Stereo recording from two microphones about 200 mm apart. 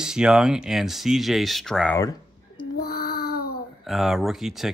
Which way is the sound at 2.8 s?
50° left (ahead or behind).